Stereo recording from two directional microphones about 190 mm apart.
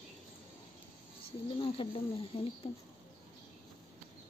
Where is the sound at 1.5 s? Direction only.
25° left (ahead or behind).